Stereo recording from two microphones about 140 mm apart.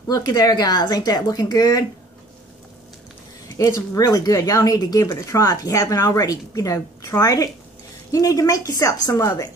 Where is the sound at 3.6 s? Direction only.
25° left (ahead or behind).